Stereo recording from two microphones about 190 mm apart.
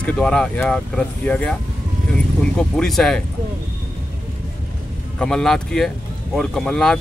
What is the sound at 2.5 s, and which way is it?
Speech, 5° left (ahead or behind).